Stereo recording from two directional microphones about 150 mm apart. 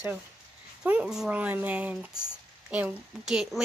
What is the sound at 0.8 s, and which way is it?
Speech, 5° right (ahead or behind).